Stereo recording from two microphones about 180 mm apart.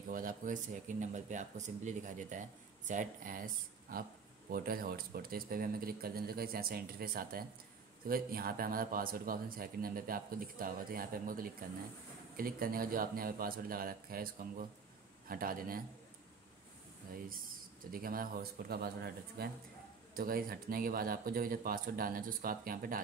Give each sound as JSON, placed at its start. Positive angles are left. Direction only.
{"t": 0.1, "sound": "speech", "side_deg": -50}
{"t": 17.9, "sound": "speech", "side_deg": -55}